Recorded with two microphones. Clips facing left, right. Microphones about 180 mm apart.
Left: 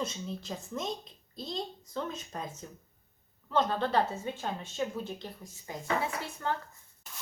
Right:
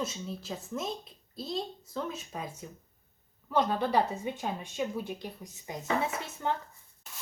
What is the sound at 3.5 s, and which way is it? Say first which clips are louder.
Speech: right 1 dB; 10° right (ahead or behind).